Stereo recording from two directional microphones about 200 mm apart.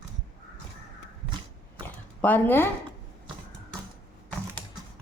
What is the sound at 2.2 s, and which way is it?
Speech, 10° left (ahead or behind).